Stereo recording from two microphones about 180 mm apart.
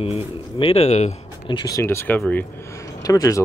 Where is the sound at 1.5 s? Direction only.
20° left (ahead or behind).